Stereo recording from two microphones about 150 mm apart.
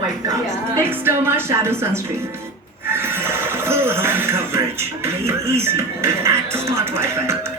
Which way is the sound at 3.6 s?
15° right (ahead or behind).